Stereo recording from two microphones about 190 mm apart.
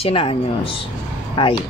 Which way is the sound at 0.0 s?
30° left (ahead or behind).